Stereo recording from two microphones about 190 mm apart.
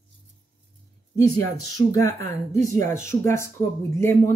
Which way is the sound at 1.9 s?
15° left (ahead or behind).